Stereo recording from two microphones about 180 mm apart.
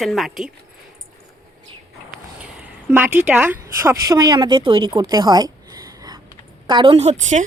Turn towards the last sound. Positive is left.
turn(degrees=-40)  # may be behind; listen again after turning